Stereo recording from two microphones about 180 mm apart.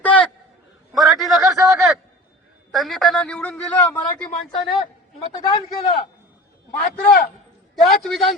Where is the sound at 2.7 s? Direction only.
Centre (ahead or behind).